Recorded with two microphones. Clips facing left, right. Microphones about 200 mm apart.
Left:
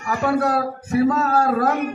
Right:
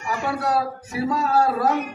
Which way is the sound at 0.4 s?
50° left (ahead or behind).